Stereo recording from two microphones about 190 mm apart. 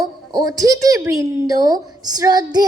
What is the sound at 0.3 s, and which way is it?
A woman's voice, 20° right (ahead or behind).